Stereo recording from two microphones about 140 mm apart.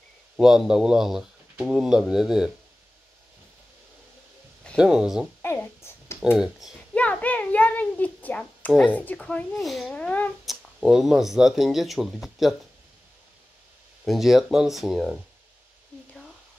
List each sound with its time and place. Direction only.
0.4 s speech: 5° right (ahead or behind)
4.7 s speech: 5° right (ahead or behind)
5.4 s a sound: 15° left (ahead or behind)
6.3 s speech: 5° right (ahead or behind)
6.9 s a sound: 10° left (ahead or behind)
10.4 s speech: 5° right (ahead or behind)
14.0 s speech: centre (ahead or behind)